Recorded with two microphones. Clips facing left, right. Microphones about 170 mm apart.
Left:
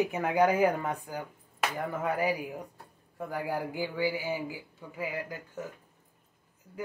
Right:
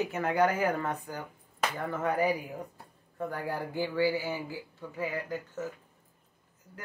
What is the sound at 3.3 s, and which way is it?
Speech, 10° left (ahead or behind).